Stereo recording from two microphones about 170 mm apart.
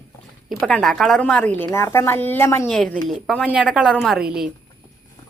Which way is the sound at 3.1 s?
5° left (ahead or behind).